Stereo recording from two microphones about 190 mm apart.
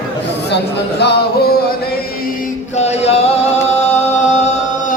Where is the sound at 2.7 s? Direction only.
35° left (ahead or behind).